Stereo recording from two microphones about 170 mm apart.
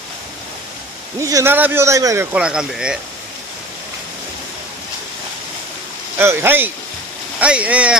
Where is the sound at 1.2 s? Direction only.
20° right (ahead or behind).